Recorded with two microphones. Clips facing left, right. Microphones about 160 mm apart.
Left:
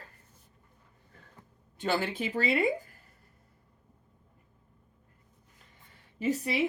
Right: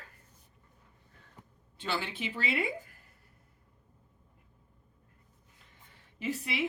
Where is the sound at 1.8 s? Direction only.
45° left (ahead or behind).